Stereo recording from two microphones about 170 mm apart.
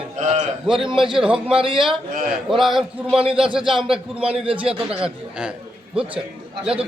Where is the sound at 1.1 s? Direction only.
5° right (ahead or behind).